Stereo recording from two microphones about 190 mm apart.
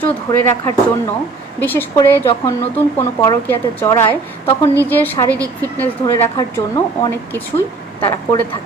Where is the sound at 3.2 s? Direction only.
15° left (ahead or behind).